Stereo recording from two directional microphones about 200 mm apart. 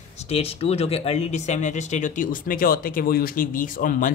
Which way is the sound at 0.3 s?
30° left (ahead or behind).